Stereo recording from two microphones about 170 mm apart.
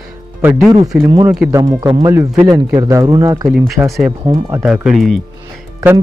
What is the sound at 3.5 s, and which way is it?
Speech, centre (ahead or behind).